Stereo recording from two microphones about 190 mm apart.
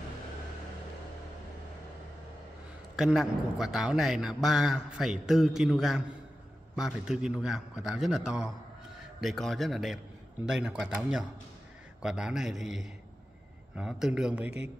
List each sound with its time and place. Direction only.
3.0 s a man's voice: 5° right (ahead or behind)